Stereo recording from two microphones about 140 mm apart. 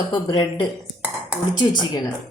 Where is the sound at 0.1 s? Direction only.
30° left (ahead or behind).